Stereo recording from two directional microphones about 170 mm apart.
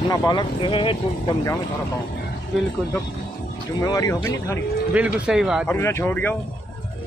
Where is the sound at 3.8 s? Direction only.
20° left (ahead or behind).